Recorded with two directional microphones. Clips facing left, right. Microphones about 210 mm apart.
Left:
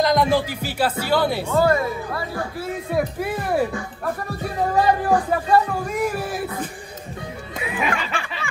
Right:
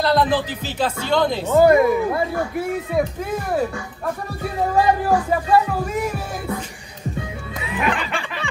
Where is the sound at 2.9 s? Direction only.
10° left (ahead or behind).